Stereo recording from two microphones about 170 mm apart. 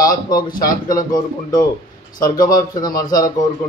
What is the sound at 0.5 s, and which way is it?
Speech, 55° left (ahead or behind).